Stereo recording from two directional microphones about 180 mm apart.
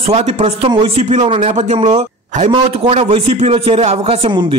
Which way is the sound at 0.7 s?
25° right (ahead or behind).